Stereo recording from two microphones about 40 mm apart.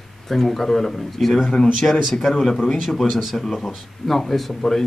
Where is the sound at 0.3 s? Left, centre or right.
Centre; by 3.0 s left.